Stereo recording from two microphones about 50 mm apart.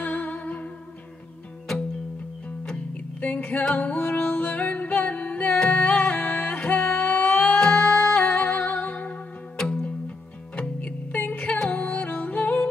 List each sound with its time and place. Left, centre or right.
0.0 s music: left
2.7 s music: left
9.6 s music: centre
9.8 s music: left